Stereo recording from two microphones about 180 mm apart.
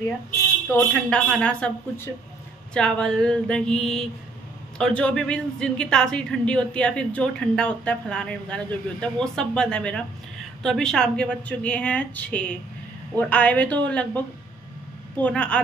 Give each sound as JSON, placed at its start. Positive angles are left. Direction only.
{"t": 0.7, "sound": "a woman's voice", "side_deg": 10}